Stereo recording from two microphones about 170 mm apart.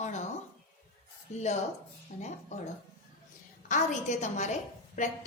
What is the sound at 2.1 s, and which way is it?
Speech, 50° left (ahead or behind).